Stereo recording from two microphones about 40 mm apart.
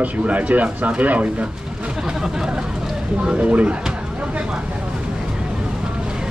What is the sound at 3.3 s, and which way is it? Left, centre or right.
Speech, right.